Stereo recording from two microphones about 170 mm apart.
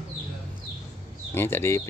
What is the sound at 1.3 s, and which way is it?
Speech, 15° left (ahead or behind).